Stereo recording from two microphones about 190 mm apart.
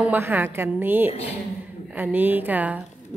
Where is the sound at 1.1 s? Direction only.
30° left (ahead or behind).